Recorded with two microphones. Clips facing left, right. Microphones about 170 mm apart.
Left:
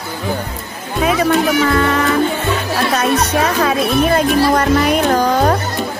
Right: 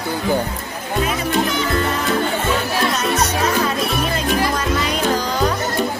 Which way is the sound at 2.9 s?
60° left (ahead or behind).